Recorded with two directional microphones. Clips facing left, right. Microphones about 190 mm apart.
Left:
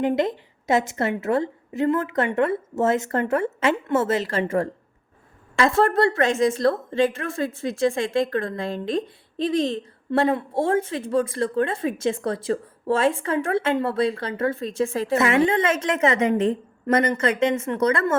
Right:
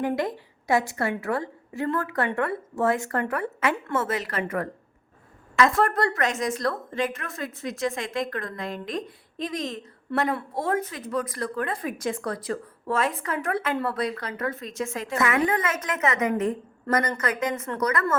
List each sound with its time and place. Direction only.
0.0 s a woman's voice: 20° left (ahead or behind)